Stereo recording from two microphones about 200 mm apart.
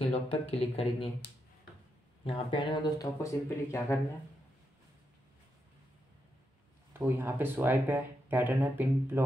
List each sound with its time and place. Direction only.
0.1 s speech: 30° left (ahead or behind)
2.2 s speech: 25° left (ahead or behind)
6.9 s speech: 10° right (ahead or behind)